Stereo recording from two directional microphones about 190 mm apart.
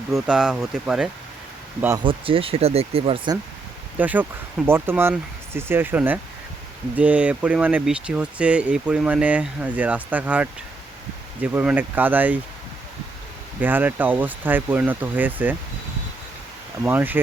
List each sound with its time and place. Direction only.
0.1 s speech: 5° right (ahead or behind)
2.0 s speech: 30° right (ahead or behind)
3.9 s speech: 10° right (ahead or behind)
11.5 s speech: 10° right (ahead or behind)
13.6 s speech: 10° right (ahead or behind)
16.8 s speech: 10° right (ahead or behind)